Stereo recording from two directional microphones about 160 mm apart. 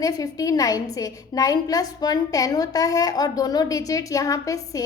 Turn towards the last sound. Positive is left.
turn(degrees=20)  # may be behind; listen again after turning